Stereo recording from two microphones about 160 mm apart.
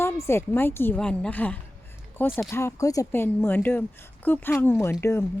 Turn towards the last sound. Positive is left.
turn(degrees=15)  # may be behind; listen again after turning